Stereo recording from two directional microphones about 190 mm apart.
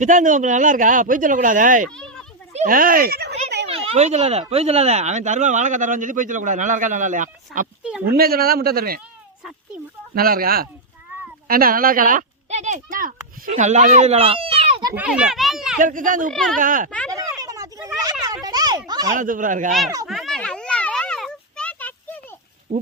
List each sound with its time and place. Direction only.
0.0 s speech: 40° right (ahead or behind)
2.0 s a sound: 5° left (ahead or behind)
2.5 s speech: 40° right (ahead or behind)
3.7 s speech: 35° right (ahead or behind); by 9.0 s 50° right (ahead or behind)
10.2 s speech: 50° right (ahead or behind); by 14.8 s 30° right (ahead or behind)
14.9 s a child's voice: 5° right (ahead or behind)
15.8 s speech: 45° right (ahead or behind)
16.3 s a child's voice: centre (ahead or behind)
16.6 s speech: 45° right (ahead or behind)
17.1 s a sound: 20° right (ahead or behind)
19.1 s speech: 45° right (ahead or behind)
20.1 s a sound: centre (ahead or behind)
22.7 s speech: 35° right (ahead or behind)